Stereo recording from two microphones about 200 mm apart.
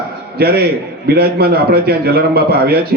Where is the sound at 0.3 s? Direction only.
50° right (ahead or behind).